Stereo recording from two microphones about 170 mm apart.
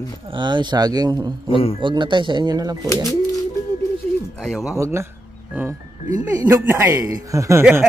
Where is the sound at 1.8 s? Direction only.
30° right (ahead or behind).